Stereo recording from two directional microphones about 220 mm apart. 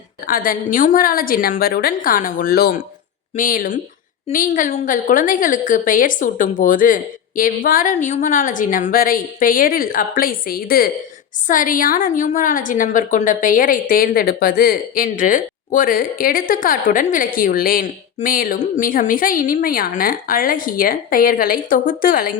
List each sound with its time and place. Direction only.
0.3 s a woman's voice: 40° left (ahead or behind)